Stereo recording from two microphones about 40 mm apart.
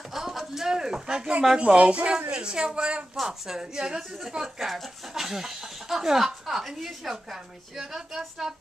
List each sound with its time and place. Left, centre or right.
0.1 s a sound: centre
0.7 s speech: centre
4.4 s speech: centre